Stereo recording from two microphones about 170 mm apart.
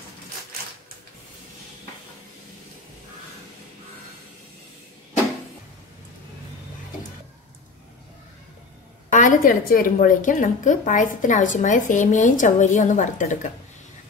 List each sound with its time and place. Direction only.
9.1 s a woman's voice: 50° left (ahead or behind)